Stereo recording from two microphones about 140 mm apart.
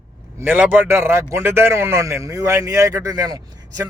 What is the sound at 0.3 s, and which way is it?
A man's voice, 10° right (ahead or behind).